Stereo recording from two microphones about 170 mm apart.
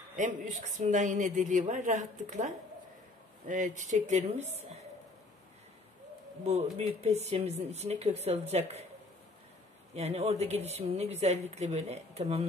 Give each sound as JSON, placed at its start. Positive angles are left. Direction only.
{"t": 0.1, "sound": "a woman's voice", "side_deg": -50}
{"t": 6.4, "sound": "speech", "side_deg": -40}
{"t": 9.9, "sound": "speech", "side_deg": -40}